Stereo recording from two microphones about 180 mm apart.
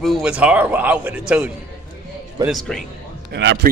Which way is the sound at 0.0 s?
Centre (ahead or behind).